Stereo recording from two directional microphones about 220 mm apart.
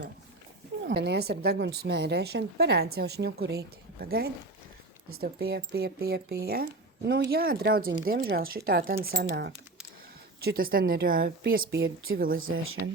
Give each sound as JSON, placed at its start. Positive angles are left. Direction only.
{"t": 0.9, "sound": "a woman's voice", "side_deg": -50}
{"t": 11.6, "sound": "a woman's voice", "side_deg": -60}
{"t": 12.4, "sound": "speech", "side_deg": -65}